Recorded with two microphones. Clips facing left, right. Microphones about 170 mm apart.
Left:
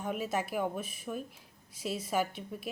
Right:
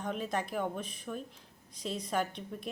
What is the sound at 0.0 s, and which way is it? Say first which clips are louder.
Speech: left 1 dB; 10° left (ahead or behind).